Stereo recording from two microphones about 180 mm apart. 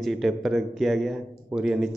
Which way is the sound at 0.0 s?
Centre (ahead or behind).